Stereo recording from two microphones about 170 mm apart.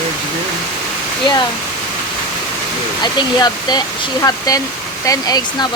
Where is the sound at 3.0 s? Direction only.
25° left (ahead or behind).